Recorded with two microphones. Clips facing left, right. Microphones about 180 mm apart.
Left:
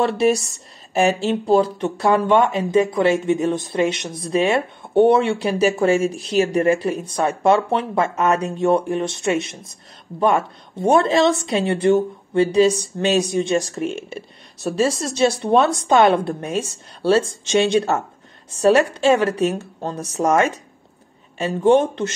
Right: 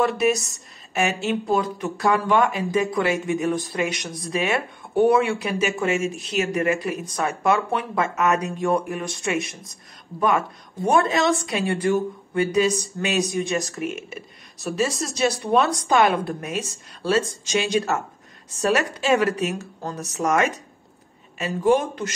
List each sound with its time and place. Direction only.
0.0 s speech: 30° left (ahead or behind)